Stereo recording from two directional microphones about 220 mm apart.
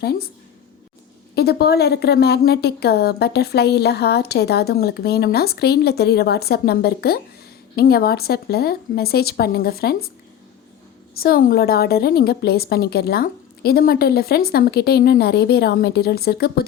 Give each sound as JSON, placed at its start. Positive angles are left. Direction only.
{"t": 0.0, "sound": "a woman's voice", "side_deg": 45}
{"t": 1.4, "sound": "a woman's voice", "side_deg": 45}
{"t": 11.2, "sound": "a woman's voice", "side_deg": 40}